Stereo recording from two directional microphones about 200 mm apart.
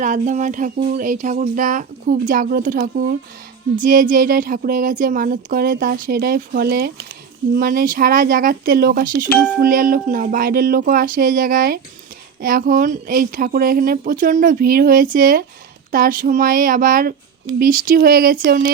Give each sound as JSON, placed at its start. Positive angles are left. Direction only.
{"t": 0.0, "sound": "speech", "side_deg": -40}